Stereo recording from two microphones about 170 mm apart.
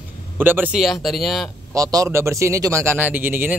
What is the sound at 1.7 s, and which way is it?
Speech, 20° right (ahead or behind).